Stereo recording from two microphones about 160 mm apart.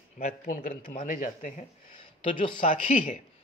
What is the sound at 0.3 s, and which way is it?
Speech, 60° left (ahead or behind).